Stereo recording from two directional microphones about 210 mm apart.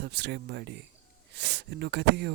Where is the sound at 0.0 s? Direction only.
55° right (ahead or behind).